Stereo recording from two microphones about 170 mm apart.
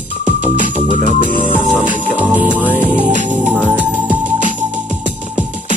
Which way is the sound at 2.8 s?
45° right (ahead or behind).